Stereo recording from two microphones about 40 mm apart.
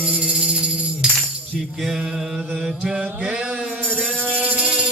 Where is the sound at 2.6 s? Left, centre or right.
Centre.